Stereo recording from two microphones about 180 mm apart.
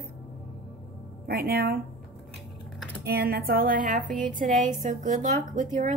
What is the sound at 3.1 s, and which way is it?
A woman's voice, 60° right (ahead or behind).